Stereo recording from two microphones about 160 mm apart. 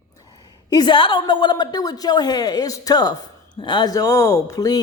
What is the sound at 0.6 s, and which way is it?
Speech, 25° left (ahead or behind).